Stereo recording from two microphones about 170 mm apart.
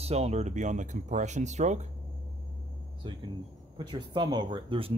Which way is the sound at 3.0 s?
25° right (ahead or behind).